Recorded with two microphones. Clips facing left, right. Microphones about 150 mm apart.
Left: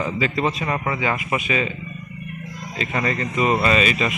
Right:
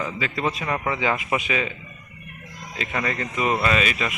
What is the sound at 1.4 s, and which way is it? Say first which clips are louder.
Speech: left 3 dB; 10° right (ahead or behind).